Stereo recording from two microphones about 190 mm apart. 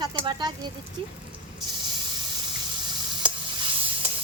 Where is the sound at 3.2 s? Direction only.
25° right (ahead or behind).